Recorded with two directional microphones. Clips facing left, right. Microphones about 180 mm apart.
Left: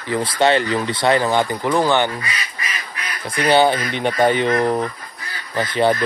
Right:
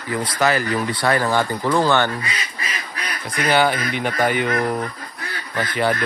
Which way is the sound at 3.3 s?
25° left (ahead or behind).